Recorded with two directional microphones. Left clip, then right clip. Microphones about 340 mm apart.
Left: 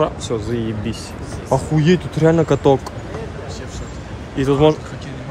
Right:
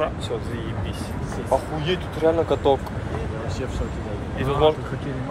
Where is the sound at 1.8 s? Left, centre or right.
Left.